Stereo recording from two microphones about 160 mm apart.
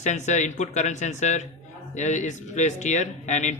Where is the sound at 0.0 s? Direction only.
50° left (ahead or behind).